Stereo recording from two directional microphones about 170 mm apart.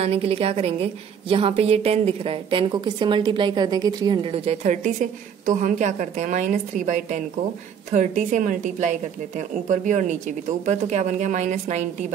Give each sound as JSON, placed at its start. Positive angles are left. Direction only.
{"t": 0.0, "sound": "a woman's voice", "side_deg": -35}
{"t": 5.4, "sound": "a woman's voice", "side_deg": -50}